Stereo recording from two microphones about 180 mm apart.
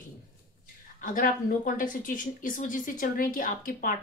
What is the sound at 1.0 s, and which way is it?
Speech, 50° left (ahead or behind).